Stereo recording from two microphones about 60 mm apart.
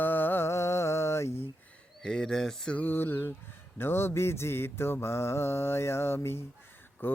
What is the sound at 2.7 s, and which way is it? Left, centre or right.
Music, left.